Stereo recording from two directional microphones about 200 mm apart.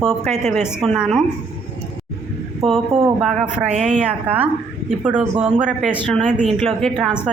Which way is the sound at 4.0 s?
5° right (ahead or behind).